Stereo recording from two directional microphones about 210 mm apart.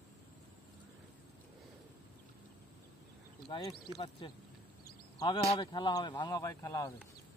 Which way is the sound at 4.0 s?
25° left (ahead or behind).